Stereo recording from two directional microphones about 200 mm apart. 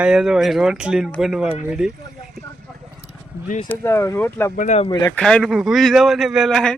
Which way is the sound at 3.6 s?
10° left (ahead or behind).